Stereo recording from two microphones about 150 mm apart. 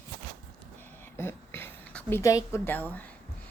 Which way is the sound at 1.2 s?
15° left (ahead or behind).